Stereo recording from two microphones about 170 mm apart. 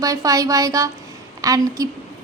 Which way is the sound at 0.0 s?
20° right (ahead or behind).